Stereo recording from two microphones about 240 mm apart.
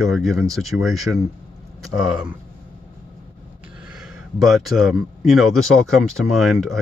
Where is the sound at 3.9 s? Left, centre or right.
Centre.